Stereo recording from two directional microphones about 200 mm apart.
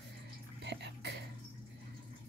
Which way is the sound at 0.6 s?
60° right (ahead or behind).